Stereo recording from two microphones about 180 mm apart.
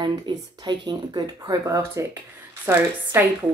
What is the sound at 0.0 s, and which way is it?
Speech, 20° right (ahead or behind).